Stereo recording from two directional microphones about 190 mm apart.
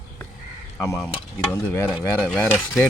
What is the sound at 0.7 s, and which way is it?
Speech, 10° left (ahead or behind).